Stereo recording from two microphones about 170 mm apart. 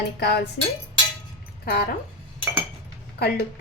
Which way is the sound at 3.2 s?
70° left (ahead or behind).